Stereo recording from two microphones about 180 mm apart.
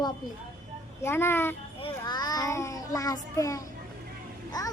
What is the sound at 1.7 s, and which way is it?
Child singing, 25° left (ahead or behind).